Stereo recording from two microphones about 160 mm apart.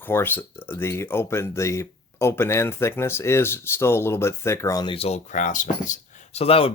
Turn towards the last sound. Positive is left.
turn(degrees=35)  # may be behind; listen again after turning